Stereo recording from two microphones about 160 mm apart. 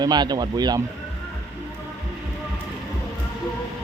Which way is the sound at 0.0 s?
25° right (ahead or behind).